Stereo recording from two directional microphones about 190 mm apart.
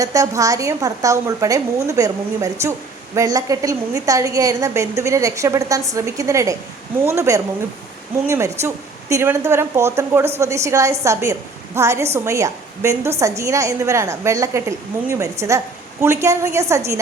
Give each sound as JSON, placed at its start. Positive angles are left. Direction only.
{"t": 0.0, "sound": "a woman's voice", "side_deg": -15}